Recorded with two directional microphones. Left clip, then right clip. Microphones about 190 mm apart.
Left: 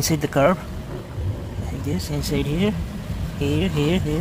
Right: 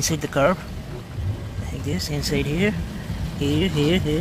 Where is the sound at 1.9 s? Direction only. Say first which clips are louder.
Right 1 dB; centre (ahead or behind).